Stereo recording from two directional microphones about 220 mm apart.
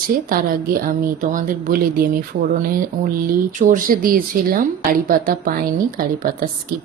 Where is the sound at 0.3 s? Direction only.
40° right (ahead or behind).